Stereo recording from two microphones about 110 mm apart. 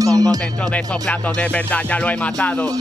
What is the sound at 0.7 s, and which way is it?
Music, 10° left (ahead or behind).